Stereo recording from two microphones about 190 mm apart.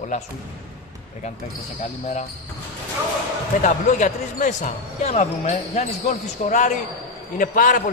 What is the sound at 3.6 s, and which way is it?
Speech, 40° left (ahead or behind).